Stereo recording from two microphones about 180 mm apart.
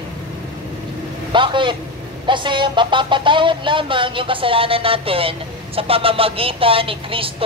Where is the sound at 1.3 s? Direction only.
25° right (ahead or behind).